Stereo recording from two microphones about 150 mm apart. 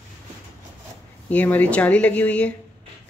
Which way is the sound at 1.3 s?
10° left (ahead or behind).